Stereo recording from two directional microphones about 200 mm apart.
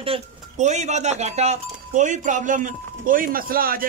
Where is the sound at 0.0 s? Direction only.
30° right (ahead or behind).